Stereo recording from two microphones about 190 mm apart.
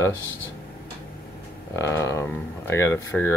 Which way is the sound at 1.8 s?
15° left (ahead or behind).